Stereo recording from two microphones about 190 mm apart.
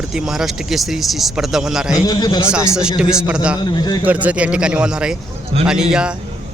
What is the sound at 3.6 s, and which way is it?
Speech, 20° left (ahead or behind).